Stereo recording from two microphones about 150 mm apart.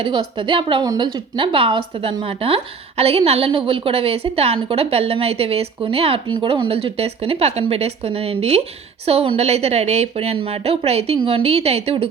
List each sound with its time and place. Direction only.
0.0 s a woman's voice: 35° right (ahead or behind)